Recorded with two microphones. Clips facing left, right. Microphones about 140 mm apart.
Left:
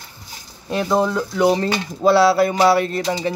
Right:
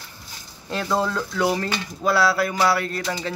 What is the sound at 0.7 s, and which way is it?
Speech, 20° left (ahead or behind).